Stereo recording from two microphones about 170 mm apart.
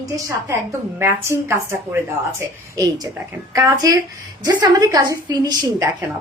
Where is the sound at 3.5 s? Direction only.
20° right (ahead or behind).